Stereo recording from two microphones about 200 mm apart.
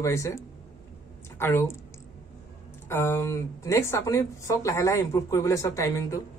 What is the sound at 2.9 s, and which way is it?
Speech, 10° left (ahead or behind).